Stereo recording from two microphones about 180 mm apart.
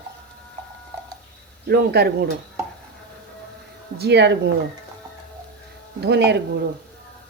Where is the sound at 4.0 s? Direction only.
70° right (ahead or behind).